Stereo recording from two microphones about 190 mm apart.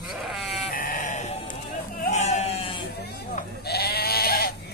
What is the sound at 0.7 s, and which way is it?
Sheep, 45° left (ahead or behind).